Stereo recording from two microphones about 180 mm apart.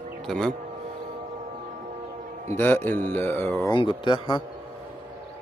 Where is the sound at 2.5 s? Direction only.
10° left (ahead or behind).